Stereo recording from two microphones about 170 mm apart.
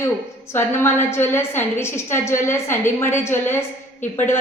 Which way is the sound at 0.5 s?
15° left (ahead or behind).